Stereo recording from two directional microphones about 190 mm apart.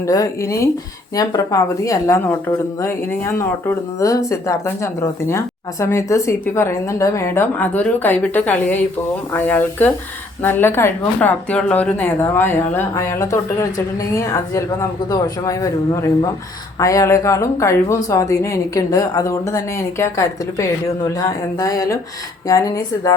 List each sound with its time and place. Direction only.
0.0 s speech: 15° left (ahead or behind)